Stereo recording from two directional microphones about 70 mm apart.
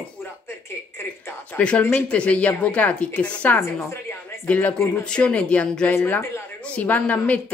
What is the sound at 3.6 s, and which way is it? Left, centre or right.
Speech, left.